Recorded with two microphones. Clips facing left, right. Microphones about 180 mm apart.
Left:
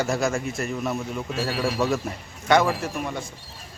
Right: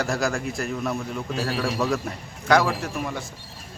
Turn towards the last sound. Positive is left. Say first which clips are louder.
# even
turn(degrees=0)  # may be behind; listen again after turning